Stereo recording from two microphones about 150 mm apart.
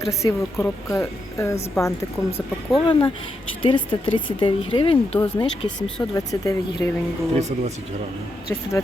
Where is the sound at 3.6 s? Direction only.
35° left (ahead or behind).